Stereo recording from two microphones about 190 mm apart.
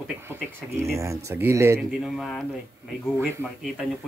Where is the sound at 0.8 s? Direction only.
15° right (ahead or behind).